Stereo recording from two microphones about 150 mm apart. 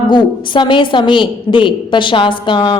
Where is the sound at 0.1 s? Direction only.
30° left (ahead or behind).